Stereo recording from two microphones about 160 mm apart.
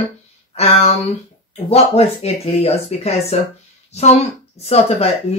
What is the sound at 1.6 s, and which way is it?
Speech, 40° left (ahead or behind).